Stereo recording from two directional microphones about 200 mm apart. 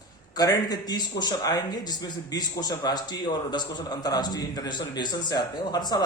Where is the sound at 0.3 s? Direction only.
20° left (ahead or behind).